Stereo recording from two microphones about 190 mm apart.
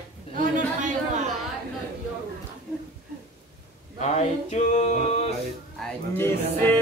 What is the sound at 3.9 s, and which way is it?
Male singing, 35° left (ahead or behind).